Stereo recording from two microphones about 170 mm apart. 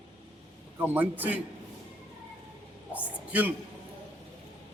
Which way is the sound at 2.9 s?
10° right (ahead or behind).